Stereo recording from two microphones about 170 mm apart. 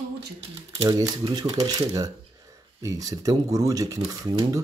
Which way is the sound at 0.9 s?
20° right (ahead or behind).